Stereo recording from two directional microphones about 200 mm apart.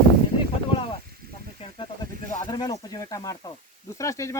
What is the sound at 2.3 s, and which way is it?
Speech, 20° left (ahead or behind).